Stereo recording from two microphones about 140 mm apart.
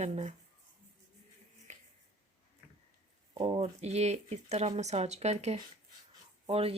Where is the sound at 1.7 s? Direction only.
55° right (ahead or behind).